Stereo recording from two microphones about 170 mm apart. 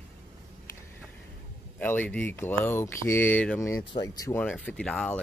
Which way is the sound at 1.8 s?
10° left (ahead or behind).